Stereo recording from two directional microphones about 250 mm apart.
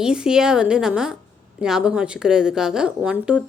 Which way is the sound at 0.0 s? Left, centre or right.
Centre.